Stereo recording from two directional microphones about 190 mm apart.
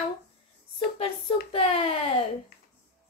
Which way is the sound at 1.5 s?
30° left (ahead or behind).